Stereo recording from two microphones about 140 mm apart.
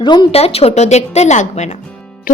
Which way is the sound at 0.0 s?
30° left (ahead or behind).